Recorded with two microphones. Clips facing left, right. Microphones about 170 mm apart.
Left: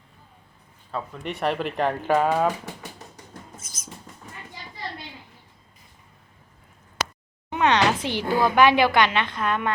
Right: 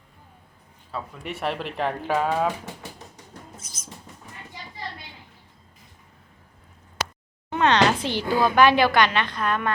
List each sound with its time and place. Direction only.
0.9 s speech: 5° right (ahead or behind)
7.5 s a woman's voice: 15° left (ahead or behind)